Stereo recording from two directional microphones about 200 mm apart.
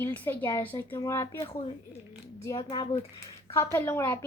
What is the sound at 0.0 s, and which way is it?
Speech, 10° left (ahead or behind).